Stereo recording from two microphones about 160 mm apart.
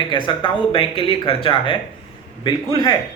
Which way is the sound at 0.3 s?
30° left (ahead or behind).